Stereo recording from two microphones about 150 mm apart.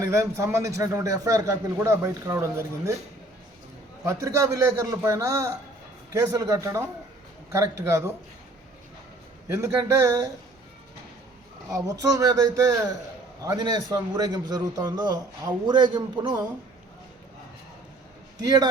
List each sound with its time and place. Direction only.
0.0 s a man's voice: 20° right (ahead or behind)
4.0 s a man's voice: 20° right (ahead or behind)
7.9 s a man's voice: 20° right (ahead or behind)
9.5 s a man's voice: 20° right (ahead or behind)
11.7 s a man's voice: 20° right (ahead or behind)
18.3 s a man's voice: 25° right (ahead or behind)